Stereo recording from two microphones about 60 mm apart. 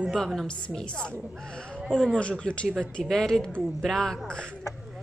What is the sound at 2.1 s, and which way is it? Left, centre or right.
Speech, centre.